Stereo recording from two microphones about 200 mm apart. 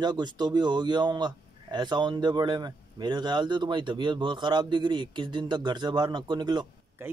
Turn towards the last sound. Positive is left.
turn(degrees=-20)  # may be behind; listen again after turning